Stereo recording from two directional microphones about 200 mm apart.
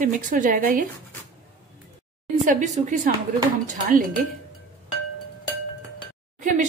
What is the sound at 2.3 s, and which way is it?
Speech, 35° right (ahead or behind).